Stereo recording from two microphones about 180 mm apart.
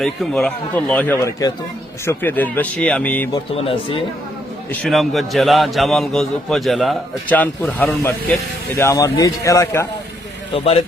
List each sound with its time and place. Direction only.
0.0 s speech: centre (ahead or behind)
3.5 s speech: 30° left (ahead or behind)
4.7 s a man's voice: 5° left (ahead or behind)
10.5 s speech: 30° left (ahead or behind)